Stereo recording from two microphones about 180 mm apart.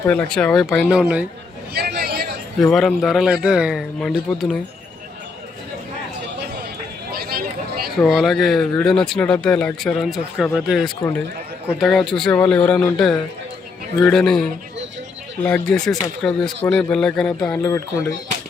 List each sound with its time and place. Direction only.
0.1 s speech: 5° left (ahead or behind)
1.7 s chatter: 60° right (ahead or behind)
2.6 s speech: centre (ahead or behind)
7.1 s a sound: 55° right (ahead or behind)
7.9 s speech: centre (ahead or behind)
14.0 s speech: 5° left (ahead or behind)
15.4 s speech: 5° left (ahead or behind)
17.6 s speech: 15° left (ahead or behind)